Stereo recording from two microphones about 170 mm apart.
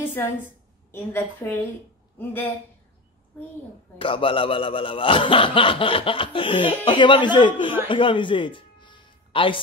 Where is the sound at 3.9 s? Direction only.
30° left (ahead or behind).